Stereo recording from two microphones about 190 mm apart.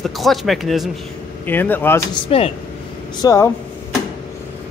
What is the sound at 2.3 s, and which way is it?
Speech, 30° left (ahead or behind).